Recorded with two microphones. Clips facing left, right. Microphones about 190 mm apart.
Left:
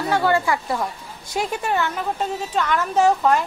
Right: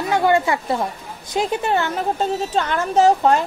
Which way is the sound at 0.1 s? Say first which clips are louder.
Right 3 dB; 20° right (ahead or behind).